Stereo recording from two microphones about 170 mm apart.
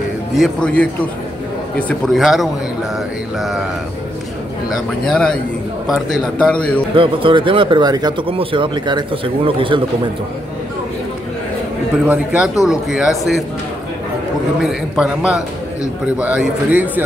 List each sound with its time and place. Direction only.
0.4 s a man's voice: 5° left (ahead or behind)
4.6 s a man's voice: 5° left (ahead or behind)
7.0 s speech: 30° right (ahead or behind)
12.0 s a man's voice: 10° right (ahead or behind)
14.6 s a man's voice: centre (ahead or behind)